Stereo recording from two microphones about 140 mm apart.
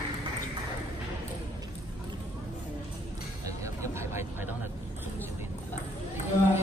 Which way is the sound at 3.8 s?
20° right (ahead or behind).